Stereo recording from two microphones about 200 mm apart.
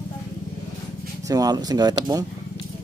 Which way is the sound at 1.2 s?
20° right (ahead or behind).